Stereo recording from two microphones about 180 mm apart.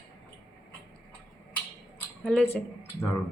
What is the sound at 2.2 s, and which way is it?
Speech, 5° left (ahead or behind).